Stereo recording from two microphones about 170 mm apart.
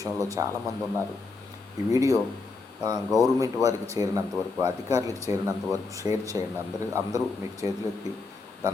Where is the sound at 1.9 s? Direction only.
20° right (ahead or behind).